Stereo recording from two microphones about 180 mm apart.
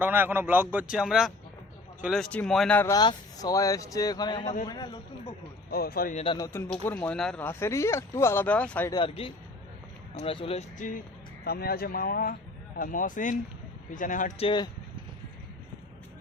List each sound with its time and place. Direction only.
0.0 s a man's voice: 10° right (ahead or behind); by 2.9 s 10° left (ahead or behind)
2.9 s a man's voice: 20° left (ahead or behind)
5.7 s speech: 55° left (ahead or behind)
6.1 s a man's voice: 30° left (ahead or behind)
6.4 s speech: 15° left (ahead or behind)
8.9 s a man's voice: 30° left (ahead or behind)
11.4 s speech: 60° left (ahead or behind)
14.3 s a man's voice: 25° left (ahead or behind)